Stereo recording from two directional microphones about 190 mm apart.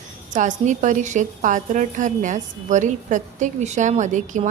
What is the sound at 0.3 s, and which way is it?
A woman's voice, 40° right (ahead or behind).